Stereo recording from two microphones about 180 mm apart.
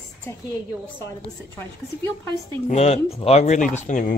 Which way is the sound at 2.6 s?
35° left (ahead or behind).